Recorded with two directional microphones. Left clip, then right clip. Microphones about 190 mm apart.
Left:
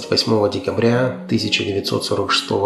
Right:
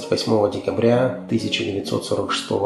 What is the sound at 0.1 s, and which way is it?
Speech, 30° left (ahead or behind).